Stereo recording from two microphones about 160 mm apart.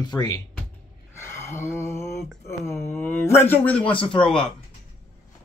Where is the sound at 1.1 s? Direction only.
15° left (ahead or behind).